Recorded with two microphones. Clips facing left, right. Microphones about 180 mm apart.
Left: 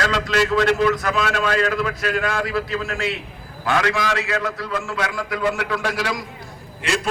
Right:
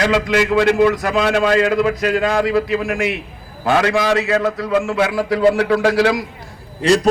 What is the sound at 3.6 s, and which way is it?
A man's voice, 30° right (ahead or behind).